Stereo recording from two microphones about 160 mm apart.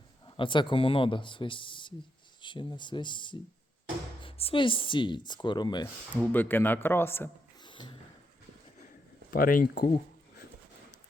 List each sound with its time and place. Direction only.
0.3 s speech: 30° left (ahead or behind)
6.3 s speech: 10° left (ahead or behind)
7.6 s a sound: 30° left (ahead or behind)
9.3 s speech: 60° left (ahead or behind)